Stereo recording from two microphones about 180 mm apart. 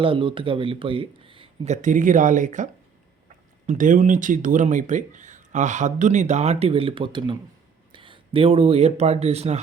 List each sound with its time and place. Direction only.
0.0 s speech: 30° right (ahead or behind); by 2.6 s 45° right (ahead or behind)
3.7 s speech: 45° right (ahead or behind)